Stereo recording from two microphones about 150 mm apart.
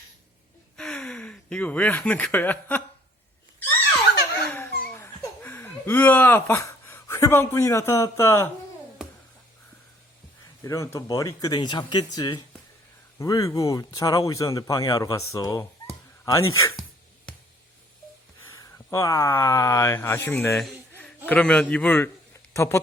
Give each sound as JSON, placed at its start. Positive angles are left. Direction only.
{"t": 0.8, "sound": "speech", "side_deg": 5}
{"t": 4.4, "sound": "laughter", "side_deg": 15}
{"t": 10.6, "sound": "speech", "side_deg": 20}
{"t": 18.5, "sound": "speech", "side_deg": 20}
{"t": 20.5, "sound": "a man's voice", "side_deg": 0}